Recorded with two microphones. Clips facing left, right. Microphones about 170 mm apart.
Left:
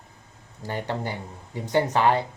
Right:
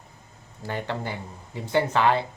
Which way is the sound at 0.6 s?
15° left (ahead or behind).